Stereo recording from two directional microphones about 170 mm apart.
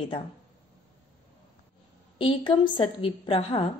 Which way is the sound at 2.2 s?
30° left (ahead or behind).